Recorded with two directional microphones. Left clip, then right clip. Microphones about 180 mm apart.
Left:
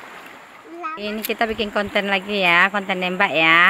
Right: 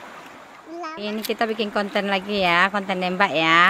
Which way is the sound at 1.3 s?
Centre (ahead or behind).